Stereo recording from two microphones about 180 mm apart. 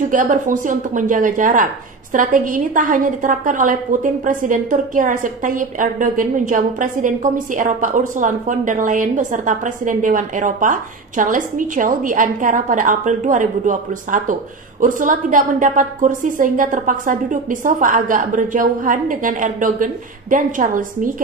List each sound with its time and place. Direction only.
0.1 s a woman's voice: 45° right (ahead or behind)